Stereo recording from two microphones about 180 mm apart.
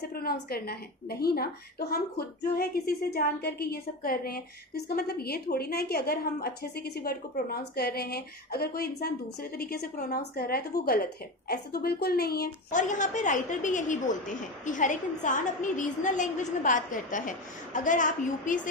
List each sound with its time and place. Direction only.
0.1 s a woman's voice: 55° left (ahead or behind)
12.8 s a woman's voice: 45° left (ahead or behind)